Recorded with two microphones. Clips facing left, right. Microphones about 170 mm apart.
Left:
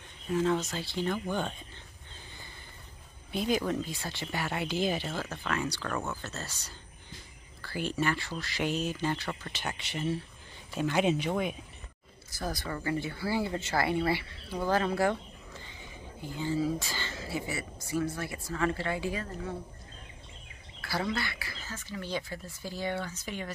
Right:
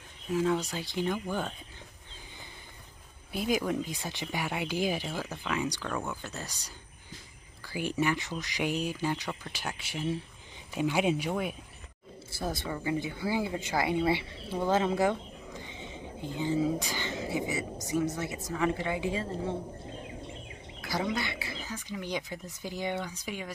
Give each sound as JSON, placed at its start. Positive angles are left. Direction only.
{"t": 0.3, "sound": "speech", "side_deg": -5}
{"t": 3.3, "sound": "speech", "side_deg": -5}
{"t": 12.3, "sound": "speech", "side_deg": -25}
{"t": 12.6, "sound": "speech", "side_deg": -15}
{"t": 20.8, "sound": "speech", "side_deg": -15}